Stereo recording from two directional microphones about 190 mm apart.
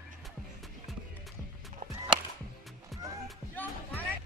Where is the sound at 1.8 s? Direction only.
45° right (ahead or behind).